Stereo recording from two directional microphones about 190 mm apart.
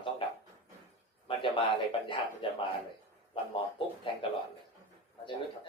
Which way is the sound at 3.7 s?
25° left (ahead or behind).